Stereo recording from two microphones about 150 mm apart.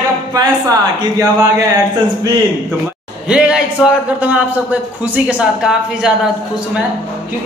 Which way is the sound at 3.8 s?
5° right (ahead or behind).